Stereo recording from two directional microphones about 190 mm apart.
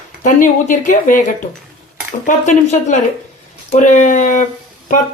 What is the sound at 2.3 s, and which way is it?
Cutlery, 40° left (ahead or behind).